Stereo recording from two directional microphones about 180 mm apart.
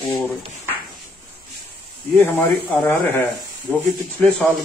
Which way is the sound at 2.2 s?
5° left (ahead or behind).